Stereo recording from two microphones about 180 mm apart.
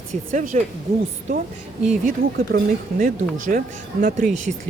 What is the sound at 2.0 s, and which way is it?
Speech, 50° right (ahead or behind).